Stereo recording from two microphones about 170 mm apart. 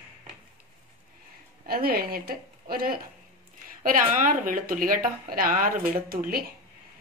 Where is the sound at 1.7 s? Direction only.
60° right (ahead or behind).